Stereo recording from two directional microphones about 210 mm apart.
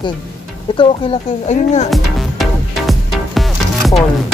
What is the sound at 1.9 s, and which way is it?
Music, centre (ahead or behind).